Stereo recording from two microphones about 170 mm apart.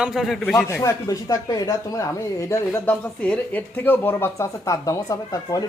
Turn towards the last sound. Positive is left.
turn(degrees=20)  # may be behind; listen again after turning